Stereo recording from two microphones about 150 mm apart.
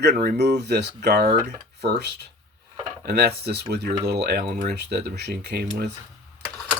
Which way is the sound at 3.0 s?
90° right.